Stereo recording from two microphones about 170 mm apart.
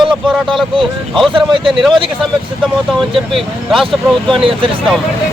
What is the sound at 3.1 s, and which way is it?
Speech, centre (ahead or behind).